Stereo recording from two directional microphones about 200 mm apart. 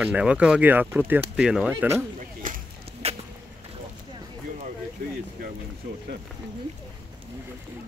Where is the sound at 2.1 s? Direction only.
40° right (ahead or behind).